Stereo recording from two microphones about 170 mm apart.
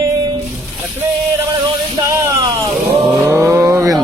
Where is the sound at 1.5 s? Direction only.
20° right (ahead or behind).